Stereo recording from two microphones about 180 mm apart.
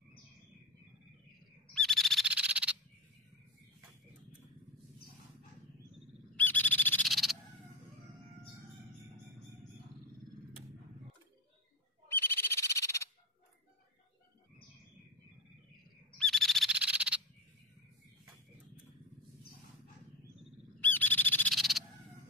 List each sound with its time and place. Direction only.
1.7 s a sound: centre (ahead or behind)
6.3 s owl: 10° left (ahead or behind)
12.3 s frog: 15° left (ahead or behind)
16.2 s owl: centre (ahead or behind)
20.8 s owl: 10° left (ahead or behind)